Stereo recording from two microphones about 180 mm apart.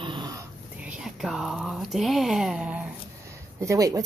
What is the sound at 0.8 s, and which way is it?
Speech, 5° right (ahead or behind).